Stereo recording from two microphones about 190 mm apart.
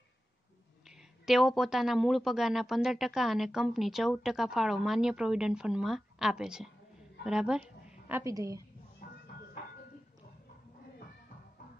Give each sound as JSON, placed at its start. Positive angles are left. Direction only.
{"t": 0.8, "sound": "a man's voice", "side_deg": 0}
{"t": 8.1, "sound": "a woman's voice", "side_deg": -15}